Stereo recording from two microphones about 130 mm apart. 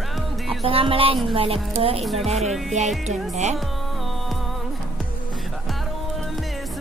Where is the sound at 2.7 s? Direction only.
60° right (ahead or behind).